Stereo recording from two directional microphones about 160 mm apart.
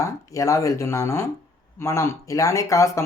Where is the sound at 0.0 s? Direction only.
20° left (ahead or behind).